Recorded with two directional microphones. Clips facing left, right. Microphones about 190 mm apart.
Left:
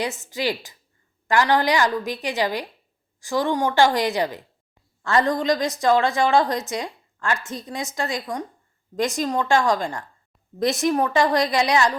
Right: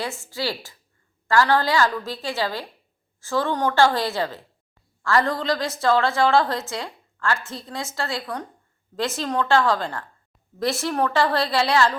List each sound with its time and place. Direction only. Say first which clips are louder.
0.0 s a woman's voice: left 3 dB; 20° left (ahead or behind)